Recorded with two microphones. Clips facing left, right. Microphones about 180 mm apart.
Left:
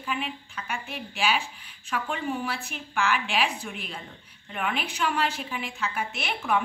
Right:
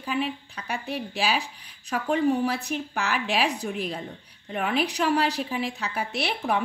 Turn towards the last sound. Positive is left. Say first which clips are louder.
# right 2 dB
turn(degrees=-35)  # may be behind; listen again after turning